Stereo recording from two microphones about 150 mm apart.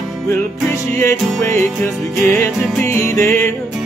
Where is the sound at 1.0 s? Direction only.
20° left (ahead or behind).